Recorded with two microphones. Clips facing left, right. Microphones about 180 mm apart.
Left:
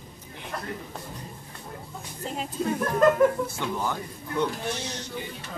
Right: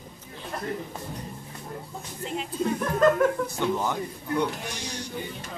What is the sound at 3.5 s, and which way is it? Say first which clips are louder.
Speech: right 3 dB; 20° right (ahead or behind).